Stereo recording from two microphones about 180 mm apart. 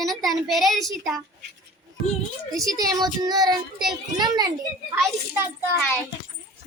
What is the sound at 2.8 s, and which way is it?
Child singing, 20° right (ahead or behind).